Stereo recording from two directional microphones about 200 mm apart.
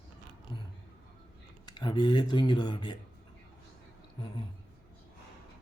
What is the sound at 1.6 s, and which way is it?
Speech, 20° left (ahead or behind).